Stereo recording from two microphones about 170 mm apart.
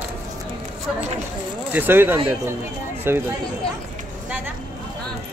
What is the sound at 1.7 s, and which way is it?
Speech, 10° right (ahead or behind).